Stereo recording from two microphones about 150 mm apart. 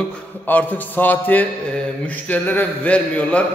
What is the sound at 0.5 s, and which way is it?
A man's voice, 10° left (ahead or behind).